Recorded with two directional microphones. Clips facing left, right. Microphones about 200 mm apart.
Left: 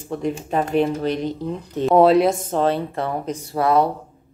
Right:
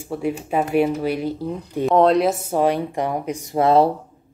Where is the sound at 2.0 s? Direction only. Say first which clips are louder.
Left 2 dB; centre (ahead or behind); by 3.6 s 15° right (ahead or behind).